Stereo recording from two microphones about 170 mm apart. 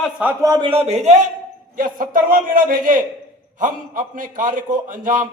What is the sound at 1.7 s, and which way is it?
A man's voice, 55° right (ahead or behind).